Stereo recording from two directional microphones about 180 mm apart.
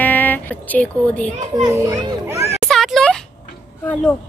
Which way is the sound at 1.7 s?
20° right (ahead or behind).